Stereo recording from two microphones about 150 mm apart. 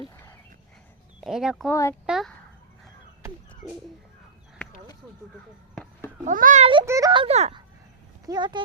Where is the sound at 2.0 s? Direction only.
5° right (ahead or behind).